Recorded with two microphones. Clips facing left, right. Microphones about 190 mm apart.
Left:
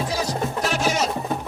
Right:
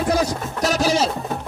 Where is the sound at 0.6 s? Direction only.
40° right (ahead or behind).